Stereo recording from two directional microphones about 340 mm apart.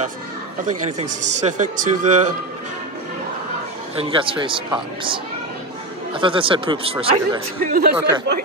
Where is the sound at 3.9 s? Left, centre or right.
Centre.